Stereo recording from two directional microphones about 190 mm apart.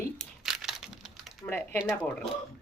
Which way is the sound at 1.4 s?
10° left (ahead or behind).